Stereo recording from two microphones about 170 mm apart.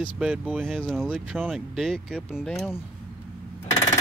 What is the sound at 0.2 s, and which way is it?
Speech, 5° right (ahead or behind).